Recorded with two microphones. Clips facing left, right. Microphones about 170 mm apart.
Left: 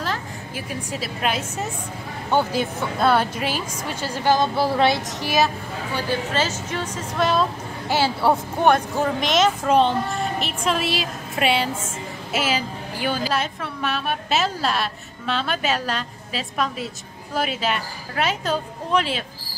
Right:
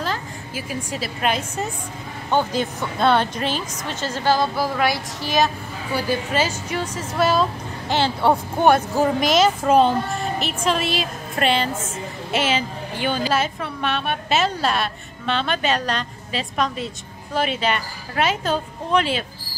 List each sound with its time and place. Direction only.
0.0 s a woman's voice: centre (ahead or behind); by 4.5 s 15° left (ahead or behind)
4.6 s speech: 30° left (ahead or behind)
5.2 s a woman's voice: 10° left (ahead or behind)
5.9 s a woman's voice: 10° right (ahead or behind)